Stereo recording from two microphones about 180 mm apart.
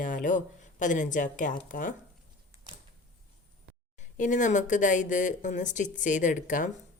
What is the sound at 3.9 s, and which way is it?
A woman's voice, 45° left (ahead or behind).